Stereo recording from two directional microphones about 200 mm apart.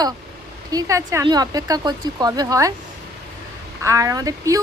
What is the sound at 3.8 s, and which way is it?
Speech, 15° right (ahead or behind).